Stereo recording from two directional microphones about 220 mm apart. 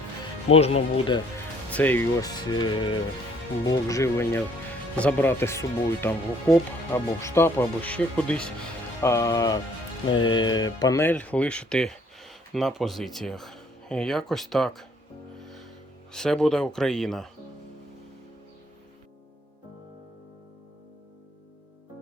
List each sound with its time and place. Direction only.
0.5 s speech: 25° left (ahead or behind)
1.7 s speech: 5° left (ahead or behind)
2.5 s speech: 20° left (ahead or behind); by 14.8 s centre (ahead or behind)
15.4 s music: centre (ahead or behind)
16.1 s speech: centre (ahead or behind)